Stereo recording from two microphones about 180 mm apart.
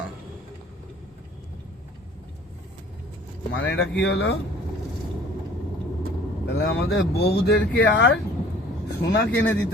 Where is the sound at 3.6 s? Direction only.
75° left (ahead or behind).